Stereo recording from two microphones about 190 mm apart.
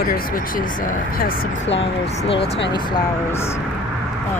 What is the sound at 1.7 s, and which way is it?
Speech, 30° left (ahead or behind).